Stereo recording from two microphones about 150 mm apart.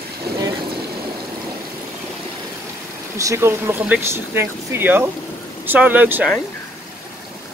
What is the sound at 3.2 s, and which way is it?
Speech, 20° right (ahead or behind).